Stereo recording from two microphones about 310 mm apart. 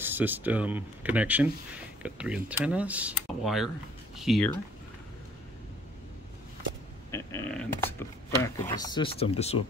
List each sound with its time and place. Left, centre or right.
0.0 s speech: centre
7.1 s speech: centre